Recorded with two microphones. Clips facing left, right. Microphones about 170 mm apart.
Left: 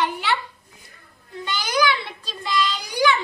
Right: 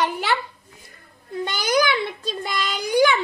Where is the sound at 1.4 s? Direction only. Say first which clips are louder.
Right 2 dB; 45° right (ahead or behind).